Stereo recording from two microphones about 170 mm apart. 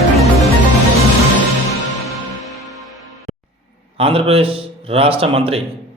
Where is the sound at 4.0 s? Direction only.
35° right (ahead or behind).